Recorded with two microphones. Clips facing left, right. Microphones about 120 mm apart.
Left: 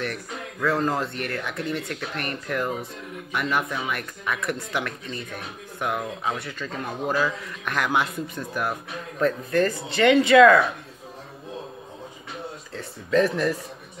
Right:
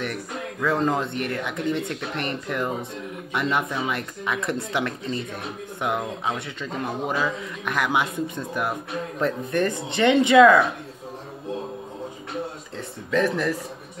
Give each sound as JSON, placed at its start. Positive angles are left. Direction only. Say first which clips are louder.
{"t": 0.7, "sound": "speech", "louder": "right 1 dB", "side_deg": -20}
{"t": 13.2, "sound": "a man's voice", "louder": "even", "side_deg": 10}